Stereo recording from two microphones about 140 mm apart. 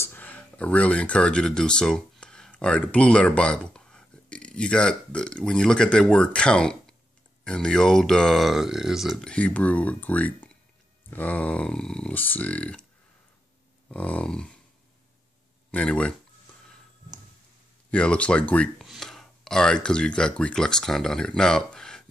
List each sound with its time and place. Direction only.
0.0 s speech: 15° left (ahead or behind)
13.8 s a sound: 10° left (ahead or behind)
15.7 s speech: 10° left (ahead or behind)
17.9 s speech: 10° left (ahead or behind)